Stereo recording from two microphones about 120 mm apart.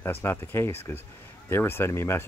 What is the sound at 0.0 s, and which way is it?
Speech, 20° left (ahead or behind).